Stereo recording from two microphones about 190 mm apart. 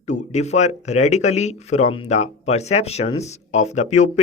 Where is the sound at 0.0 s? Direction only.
35° left (ahead or behind).